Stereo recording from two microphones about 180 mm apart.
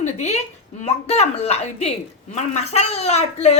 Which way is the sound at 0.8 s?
35° left (ahead or behind).